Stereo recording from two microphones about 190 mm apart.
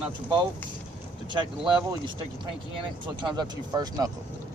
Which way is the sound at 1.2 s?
25° right (ahead or behind).